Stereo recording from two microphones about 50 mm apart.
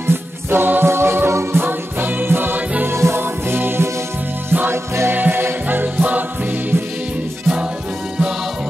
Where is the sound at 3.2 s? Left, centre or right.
Right.